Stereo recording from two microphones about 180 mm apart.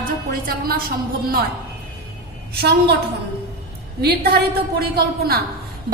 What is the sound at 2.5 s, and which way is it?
Speech, 65° right (ahead or behind).